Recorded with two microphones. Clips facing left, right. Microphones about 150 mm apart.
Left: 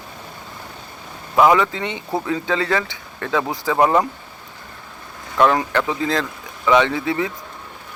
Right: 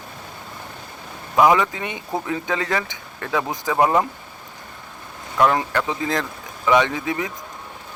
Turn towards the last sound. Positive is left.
turn(degrees=-20)  # may be behind; listen again after turning